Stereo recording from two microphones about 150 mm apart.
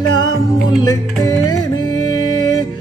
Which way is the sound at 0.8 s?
25° left (ahead or behind).